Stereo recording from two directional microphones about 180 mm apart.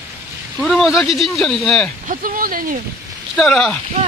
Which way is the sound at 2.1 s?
50° right (ahead or behind).